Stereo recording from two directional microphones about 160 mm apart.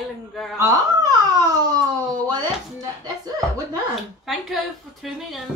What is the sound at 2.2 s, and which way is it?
Speech, 25° right (ahead or behind).